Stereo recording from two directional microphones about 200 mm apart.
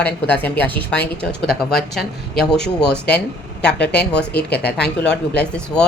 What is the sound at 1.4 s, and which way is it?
Speech, 55° left (ahead or behind).